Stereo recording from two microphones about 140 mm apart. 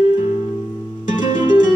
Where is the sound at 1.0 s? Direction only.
65° left (ahead or behind).